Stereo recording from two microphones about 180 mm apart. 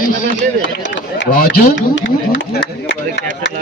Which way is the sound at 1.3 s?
55° left (ahead or behind).